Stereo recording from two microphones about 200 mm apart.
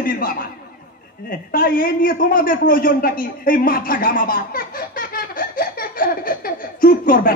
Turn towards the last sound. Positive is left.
turn(degrees=45)  # may be behind; listen again after turning